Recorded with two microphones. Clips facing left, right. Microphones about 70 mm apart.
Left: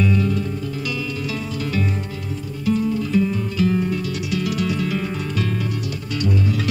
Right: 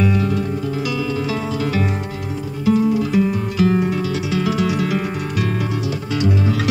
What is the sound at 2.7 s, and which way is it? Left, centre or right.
Music, right.